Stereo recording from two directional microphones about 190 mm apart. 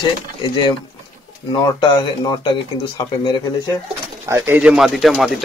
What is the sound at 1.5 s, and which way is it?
Speech, 20° left (ahead or behind).